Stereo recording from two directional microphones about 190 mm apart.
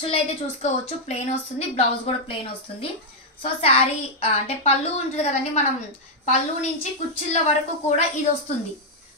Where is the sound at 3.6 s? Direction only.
30° left (ahead or behind).